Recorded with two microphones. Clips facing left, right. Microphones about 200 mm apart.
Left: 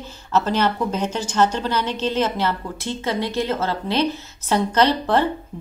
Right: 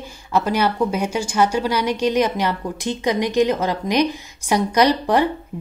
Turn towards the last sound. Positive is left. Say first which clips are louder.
# right 2 dB
turn(degrees=-15)  # may be behind; listen again after turning